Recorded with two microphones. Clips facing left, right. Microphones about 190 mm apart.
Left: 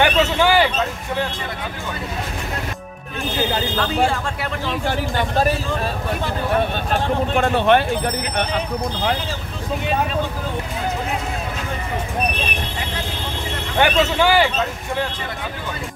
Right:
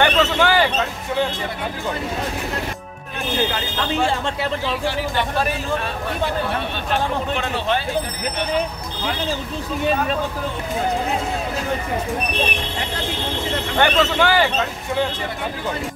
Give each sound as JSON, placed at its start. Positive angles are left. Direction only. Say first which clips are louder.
{"t": 0.0, "sound": "a sound", "louder": "left 1 dB", "side_deg": 10}
{"t": 4.8, "sound": "speech", "louder": "even", "side_deg": 45}
{"t": 6.9, "sound": "speech", "louder": "right 2 dB", "side_deg": 50}
{"t": 13.7, "sound": "speech", "louder": "left 1 dB", "side_deg": 10}